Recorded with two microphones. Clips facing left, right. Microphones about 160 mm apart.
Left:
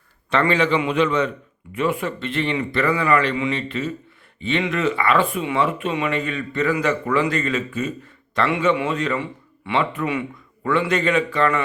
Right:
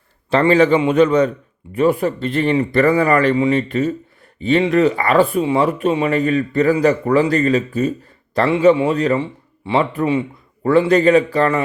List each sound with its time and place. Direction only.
0.3 s speech: 35° right (ahead or behind)